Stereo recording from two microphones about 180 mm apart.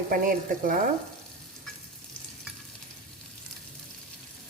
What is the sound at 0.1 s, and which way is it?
Speech, 50° right (ahead or behind).